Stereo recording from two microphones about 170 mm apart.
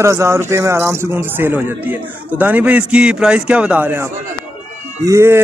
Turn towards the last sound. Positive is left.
turn(degrees=-15)  # may be behind; listen again after turning